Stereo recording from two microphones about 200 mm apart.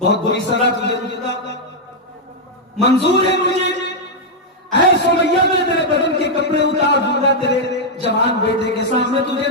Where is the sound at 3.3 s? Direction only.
60° left (ahead or behind).